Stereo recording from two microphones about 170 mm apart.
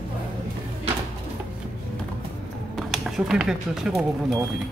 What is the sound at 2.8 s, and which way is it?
Speech, centre (ahead or behind).